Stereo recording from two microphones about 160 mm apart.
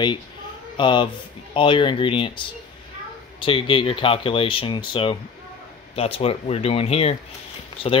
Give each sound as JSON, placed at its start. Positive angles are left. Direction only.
{"t": 0.7, "sound": "speech", "side_deg": 30}